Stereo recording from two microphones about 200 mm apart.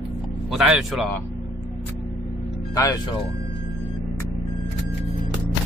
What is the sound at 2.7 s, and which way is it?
Speech, 20° left (ahead or behind).